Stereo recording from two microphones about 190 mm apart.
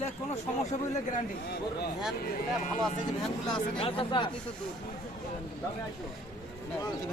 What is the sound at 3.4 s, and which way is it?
Speech, 25° left (ahead or behind).